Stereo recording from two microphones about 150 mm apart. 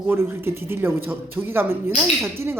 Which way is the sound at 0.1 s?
15° right (ahead or behind).